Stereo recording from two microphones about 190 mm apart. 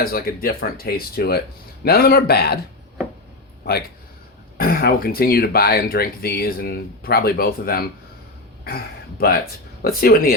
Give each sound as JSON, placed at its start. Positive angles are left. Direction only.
{"t": 0.0, "sound": "a man's voice", "side_deg": 50}
{"t": 4.5, "sound": "speech", "side_deg": 50}